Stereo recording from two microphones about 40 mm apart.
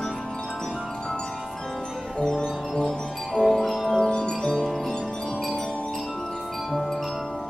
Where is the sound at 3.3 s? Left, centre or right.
Centre.